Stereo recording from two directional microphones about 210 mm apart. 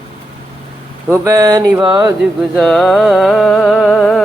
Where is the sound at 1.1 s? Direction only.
15° right (ahead or behind).